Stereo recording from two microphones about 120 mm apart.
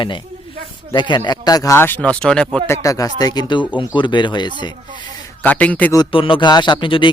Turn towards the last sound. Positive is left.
turn(degrees=40)  # may be behind; listen again after turning